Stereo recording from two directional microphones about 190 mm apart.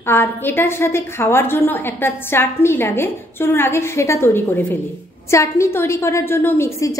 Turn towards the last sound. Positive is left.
turn(degrees=15)  # may be behind; listen again after turning